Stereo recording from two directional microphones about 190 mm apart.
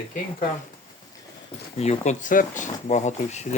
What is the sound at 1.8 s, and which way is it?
Speech, 35° left (ahead or behind).